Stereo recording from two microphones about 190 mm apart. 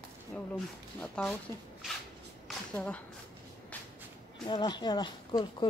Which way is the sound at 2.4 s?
5° left (ahead or behind).